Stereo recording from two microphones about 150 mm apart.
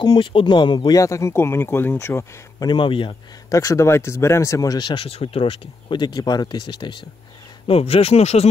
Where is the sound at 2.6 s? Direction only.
35° left (ahead or behind).